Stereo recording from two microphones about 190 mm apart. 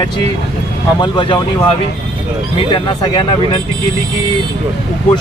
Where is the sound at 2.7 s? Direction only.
25° left (ahead or behind).